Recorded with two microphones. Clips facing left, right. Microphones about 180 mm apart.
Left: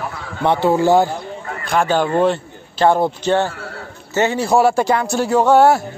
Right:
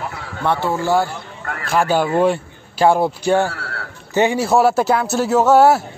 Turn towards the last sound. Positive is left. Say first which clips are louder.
# even
turn(degrees=-5)  # may be behind; listen again after turning